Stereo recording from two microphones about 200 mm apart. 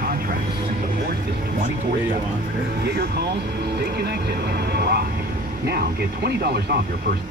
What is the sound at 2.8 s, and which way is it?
Speech, 50° right (ahead or behind).